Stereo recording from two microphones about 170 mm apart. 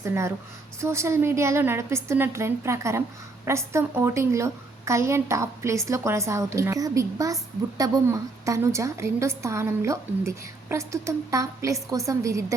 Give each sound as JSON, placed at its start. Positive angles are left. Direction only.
{"t": 0.0, "sound": "a woman's voice", "side_deg": -15}